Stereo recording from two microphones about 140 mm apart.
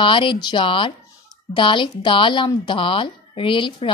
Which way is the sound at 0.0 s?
35° left (ahead or behind).